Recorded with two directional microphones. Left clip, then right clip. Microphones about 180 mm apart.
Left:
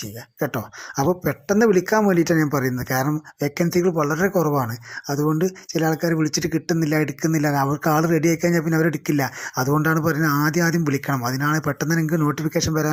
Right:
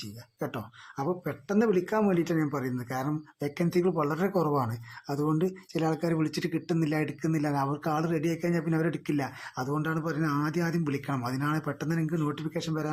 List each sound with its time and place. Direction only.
0.3 s speech: 25° left (ahead or behind)